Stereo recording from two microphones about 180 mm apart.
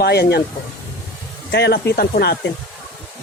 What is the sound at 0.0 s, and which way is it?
Speech, 60° left (ahead or behind).